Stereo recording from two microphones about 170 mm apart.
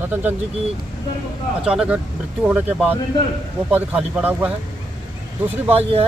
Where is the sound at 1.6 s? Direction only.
5° right (ahead or behind).